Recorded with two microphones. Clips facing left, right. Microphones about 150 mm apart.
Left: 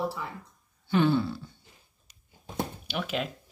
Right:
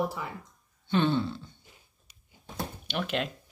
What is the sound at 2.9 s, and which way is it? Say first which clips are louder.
Speech: right 3 dB; 5° left (ahead or behind).